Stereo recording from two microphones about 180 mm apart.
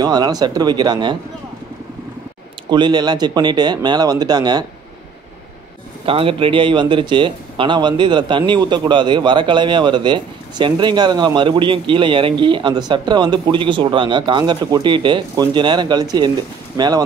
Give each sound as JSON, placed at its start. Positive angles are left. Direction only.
{"t": 0.0, "sound": "speech", "side_deg": -20}
{"t": 2.7, "sound": "speech", "side_deg": -25}
{"t": 6.0, "sound": "speech", "side_deg": -30}